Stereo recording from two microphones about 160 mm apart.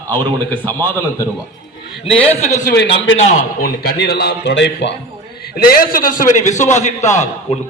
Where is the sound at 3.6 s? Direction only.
80° left.